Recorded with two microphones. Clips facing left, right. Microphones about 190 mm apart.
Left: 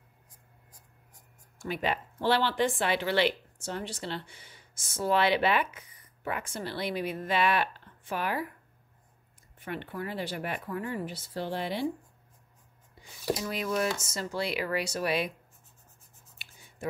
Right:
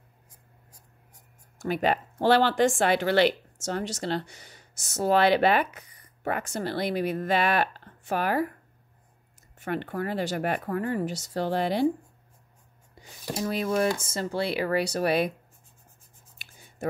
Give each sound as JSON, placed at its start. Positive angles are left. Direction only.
{"t": 1.6, "sound": "speech", "side_deg": -45}
{"t": 4.4, "sound": "a sound", "side_deg": -40}
{"t": 4.9, "sound": "speech", "side_deg": -40}
{"t": 9.6, "sound": "speech", "side_deg": -45}
{"t": 10.6, "sound": "speech", "side_deg": -55}
{"t": 13.4, "sound": "speech", "side_deg": -30}
{"t": 13.8, "sound": "speech", "side_deg": -55}
{"t": 14.1, "sound": "speech", "side_deg": -30}